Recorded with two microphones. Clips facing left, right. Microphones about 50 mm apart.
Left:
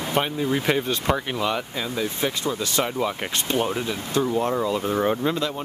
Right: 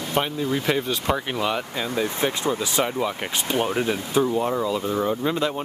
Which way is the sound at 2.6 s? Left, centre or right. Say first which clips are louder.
Right 1 dB; centre.